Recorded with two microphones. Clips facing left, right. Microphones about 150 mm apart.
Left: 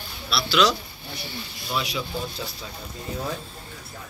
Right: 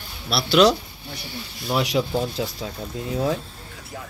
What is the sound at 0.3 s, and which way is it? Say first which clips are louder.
Speech: right 5 dB; 55° right (ahead or behind).